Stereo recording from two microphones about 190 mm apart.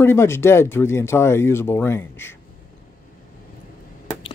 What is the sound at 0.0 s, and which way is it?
Speech, 15° left (ahead or behind).